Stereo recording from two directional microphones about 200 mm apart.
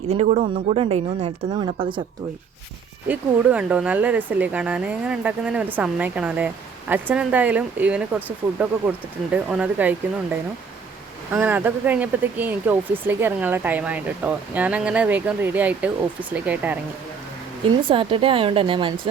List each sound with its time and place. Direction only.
0.1 s speech: 35° right (ahead or behind)
3.1 s speech: 5° right (ahead or behind)
11.3 s speech: 10° right (ahead or behind)
17.8 s speech: 25° right (ahead or behind)